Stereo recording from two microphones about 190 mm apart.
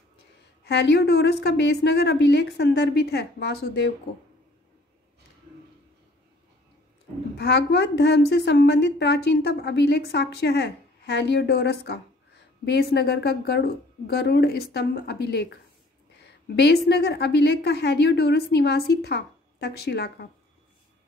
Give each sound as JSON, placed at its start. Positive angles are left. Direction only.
{"t": 0.7, "sound": "a woman's voice", "side_deg": 65}
{"t": 7.3, "sound": "a woman's voice", "side_deg": 60}